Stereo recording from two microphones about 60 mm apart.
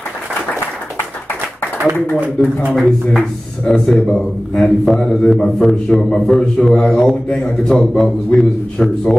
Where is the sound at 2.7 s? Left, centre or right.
Centre.